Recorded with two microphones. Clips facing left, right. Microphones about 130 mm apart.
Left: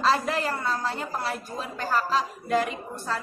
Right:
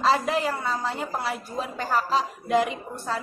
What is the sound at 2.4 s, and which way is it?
Speech, 15° right (ahead or behind).